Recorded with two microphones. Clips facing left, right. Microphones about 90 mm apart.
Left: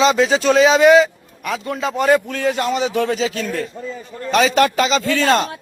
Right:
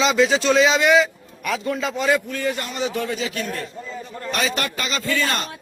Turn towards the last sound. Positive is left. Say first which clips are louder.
# left 7 dB
turn(degrees=70)  # may be behind; listen again after turning